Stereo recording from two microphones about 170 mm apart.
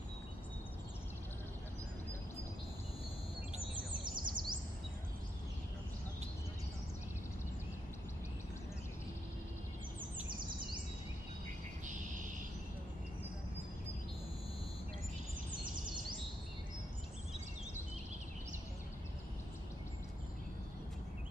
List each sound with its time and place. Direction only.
4.0 s bird vocalization: 25° right (ahead or behind)